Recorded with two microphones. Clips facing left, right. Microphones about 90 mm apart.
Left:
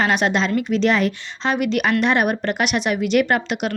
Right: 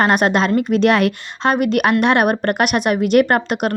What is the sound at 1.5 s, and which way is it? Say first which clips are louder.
Speech: right 3 dB; 50° right (ahead or behind).